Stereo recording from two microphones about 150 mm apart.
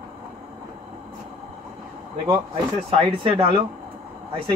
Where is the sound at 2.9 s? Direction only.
40° right (ahead or behind).